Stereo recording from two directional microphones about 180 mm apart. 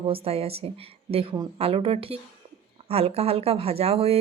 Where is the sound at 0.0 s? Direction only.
35° right (ahead or behind).